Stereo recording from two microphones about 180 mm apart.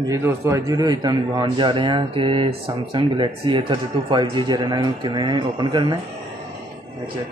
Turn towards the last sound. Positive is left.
turn(degrees=-25)  # may be behind; listen again after turning